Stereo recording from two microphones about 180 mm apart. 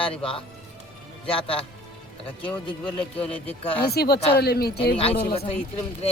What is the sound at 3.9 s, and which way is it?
Speech, 60° left (ahead or behind).